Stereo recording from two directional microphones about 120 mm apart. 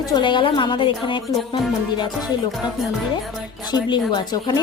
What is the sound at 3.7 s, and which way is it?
Speech, 35° left (ahead or behind).